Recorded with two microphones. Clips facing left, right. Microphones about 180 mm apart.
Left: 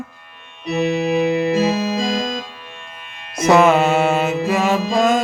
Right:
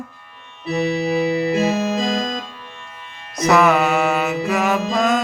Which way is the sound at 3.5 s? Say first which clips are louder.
Left 2 dB; 25° left (ahead or behind).